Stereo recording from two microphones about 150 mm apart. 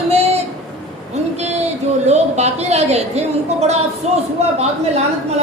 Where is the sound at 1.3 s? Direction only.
45° right (ahead or behind).